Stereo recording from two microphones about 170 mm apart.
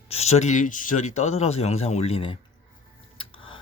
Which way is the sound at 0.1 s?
40° left (ahead or behind).